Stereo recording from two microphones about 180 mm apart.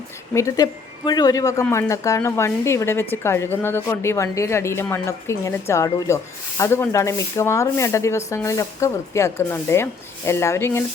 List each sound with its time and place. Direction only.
0.3 s a woman's voice: 20° left (ahead or behind)